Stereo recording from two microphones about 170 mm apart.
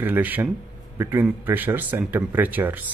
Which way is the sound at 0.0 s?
10° right (ahead or behind).